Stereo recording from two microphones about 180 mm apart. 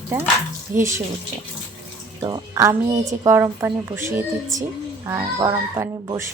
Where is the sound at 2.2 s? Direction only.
20° right (ahead or behind).